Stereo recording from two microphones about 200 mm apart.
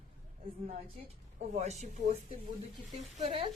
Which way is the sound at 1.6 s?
35° right (ahead or behind).